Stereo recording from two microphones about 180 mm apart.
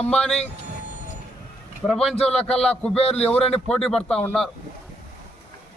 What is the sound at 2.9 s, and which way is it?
Speech, 35° left (ahead or behind).